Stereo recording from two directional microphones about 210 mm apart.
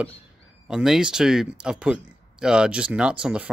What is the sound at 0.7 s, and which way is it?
Speech, 5° right (ahead or behind).